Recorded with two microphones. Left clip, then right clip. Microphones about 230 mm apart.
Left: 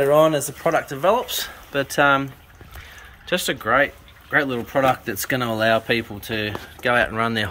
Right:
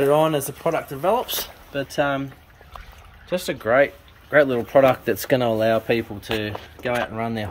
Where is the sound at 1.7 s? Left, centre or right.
Centre.